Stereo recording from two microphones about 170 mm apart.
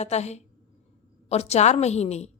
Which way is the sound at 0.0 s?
40° left (ahead or behind).